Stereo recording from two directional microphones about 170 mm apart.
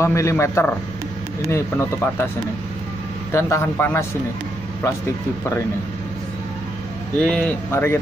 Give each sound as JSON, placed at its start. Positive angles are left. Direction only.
{"t": 0.0, "sound": "speech", "side_deg": 15}
{"t": 3.3, "sound": "speech", "side_deg": 15}
{"t": 7.2, "sound": "speech", "side_deg": 5}